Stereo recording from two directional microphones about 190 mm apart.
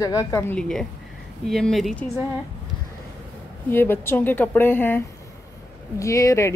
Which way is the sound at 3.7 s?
10° left (ahead or behind).